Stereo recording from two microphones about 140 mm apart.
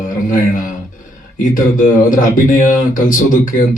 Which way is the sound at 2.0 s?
70° left (ahead or behind).